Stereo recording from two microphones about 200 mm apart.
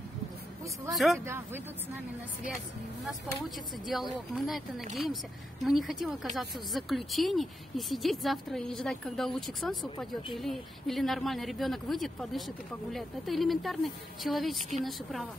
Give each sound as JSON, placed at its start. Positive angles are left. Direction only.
{"t": 0.9, "sound": "speech", "side_deg": 0}
{"t": 1.2, "sound": "speech", "side_deg": -10}
{"t": 3.1, "sound": "speech", "side_deg": 0}